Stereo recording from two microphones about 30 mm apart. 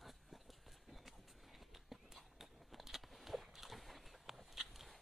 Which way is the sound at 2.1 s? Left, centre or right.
Centre.